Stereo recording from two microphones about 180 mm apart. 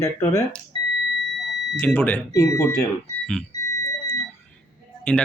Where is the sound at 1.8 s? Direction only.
10° left (ahead or behind).